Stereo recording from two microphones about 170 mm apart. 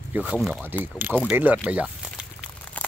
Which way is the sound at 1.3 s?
10° right (ahead or behind).